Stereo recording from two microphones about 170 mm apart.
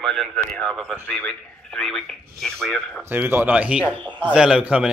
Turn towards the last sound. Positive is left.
turn(degrees=-5)  # may be behind; listen again after turning